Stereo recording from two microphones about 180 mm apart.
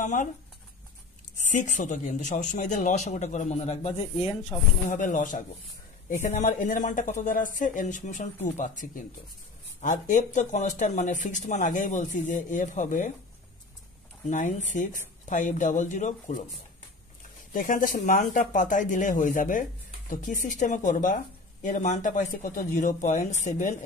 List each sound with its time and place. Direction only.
0.0 s speech: 45° left (ahead or behind)
1.4 s speech: 45° left (ahead or behind)
4.8 s speech: 45° left (ahead or behind)
14.2 s speech: 40° left (ahead or behind)
17.5 s speech: 50° left (ahead or behind)